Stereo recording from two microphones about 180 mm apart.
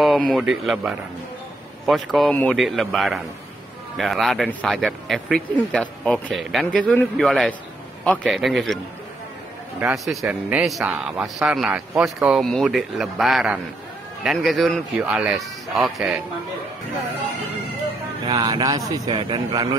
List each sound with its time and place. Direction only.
0.0 s speech: centre (ahead or behind)
9.9 s speech: 5° right (ahead or behind)
18.3 s a man's voice: 20° right (ahead or behind)